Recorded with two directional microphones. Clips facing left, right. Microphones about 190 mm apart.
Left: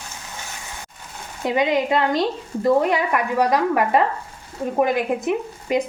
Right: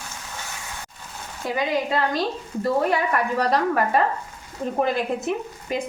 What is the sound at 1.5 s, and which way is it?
A woman's voice, 20° left (ahead or behind).